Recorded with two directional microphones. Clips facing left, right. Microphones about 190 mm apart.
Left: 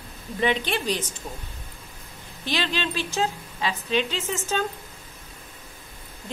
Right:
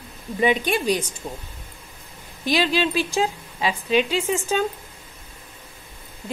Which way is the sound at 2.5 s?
10° right (ahead or behind).